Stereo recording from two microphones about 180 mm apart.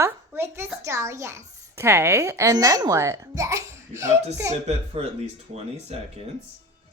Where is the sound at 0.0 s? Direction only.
15° right (ahead or behind).